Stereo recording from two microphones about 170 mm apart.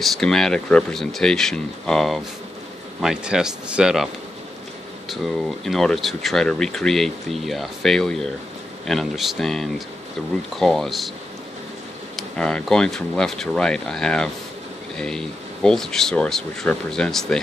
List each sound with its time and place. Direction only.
0.0 s speech: 5° left (ahead or behind)
5.1 s speech: centre (ahead or behind)
12.2 s speech: 5° left (ahead or behind)